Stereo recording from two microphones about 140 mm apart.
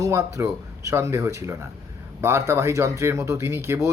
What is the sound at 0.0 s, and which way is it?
A man's voice, 20° right (ahead or behind).